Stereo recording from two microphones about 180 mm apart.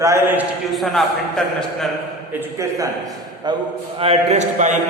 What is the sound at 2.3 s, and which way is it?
A man's voice, 15° right (ahead or behind).